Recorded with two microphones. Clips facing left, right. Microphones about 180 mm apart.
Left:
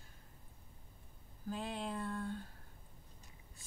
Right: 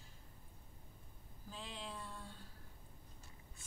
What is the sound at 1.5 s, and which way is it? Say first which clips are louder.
Speech: left 8 dB; 55° left (ahead or behind).